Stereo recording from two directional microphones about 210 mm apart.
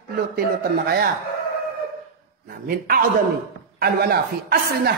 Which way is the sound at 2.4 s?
45° right (ahead or behind).